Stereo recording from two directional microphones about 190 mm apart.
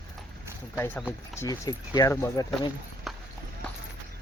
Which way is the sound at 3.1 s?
Centre (ahead or behind).